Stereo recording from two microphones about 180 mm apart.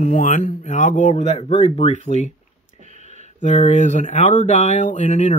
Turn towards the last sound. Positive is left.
turn(degrees=40)  # may be behind; listen again after turning